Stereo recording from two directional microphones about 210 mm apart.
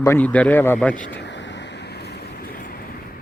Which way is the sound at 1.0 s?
55° left (ahead or behind).